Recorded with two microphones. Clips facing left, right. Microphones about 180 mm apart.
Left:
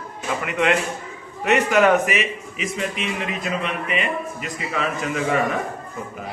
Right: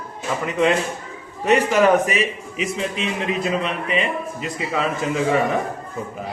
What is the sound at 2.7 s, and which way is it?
A man's voice, 30° right (ahead or behind).